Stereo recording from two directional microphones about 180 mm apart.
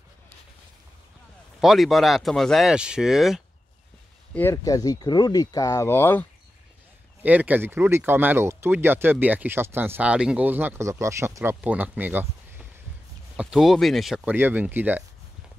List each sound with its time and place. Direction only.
1.6 s speech: centre (ahead or behind)
4.3 s speech: 10° left (ahead or behind)
7.2 s speech: 10° right (ahead or behind)
13.4 s speech: 5° right (ahead or behind)